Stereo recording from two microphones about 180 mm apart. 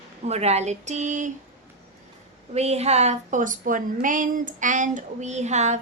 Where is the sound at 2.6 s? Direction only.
35° right (ahead or behind).